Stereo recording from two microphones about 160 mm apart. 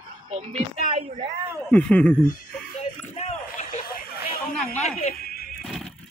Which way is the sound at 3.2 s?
45° left (ahead or behind).